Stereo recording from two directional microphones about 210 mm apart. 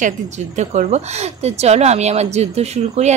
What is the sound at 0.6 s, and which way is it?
Speech, 35° right (ahead or behind).